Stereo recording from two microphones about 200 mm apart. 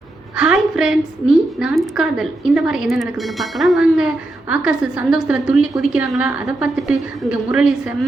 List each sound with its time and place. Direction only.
0.3 s a woman's voice: centre (ahead or behind)